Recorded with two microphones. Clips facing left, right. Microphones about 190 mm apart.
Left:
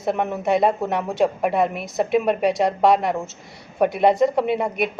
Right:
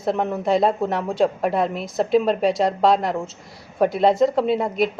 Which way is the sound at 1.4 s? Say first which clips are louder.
Left 1 dB; centre (ahead or behind).